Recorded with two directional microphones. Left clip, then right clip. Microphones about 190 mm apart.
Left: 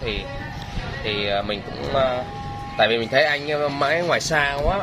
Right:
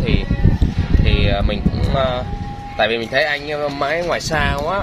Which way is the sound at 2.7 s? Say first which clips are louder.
Right 1 dB; 10° right (ahead or behind).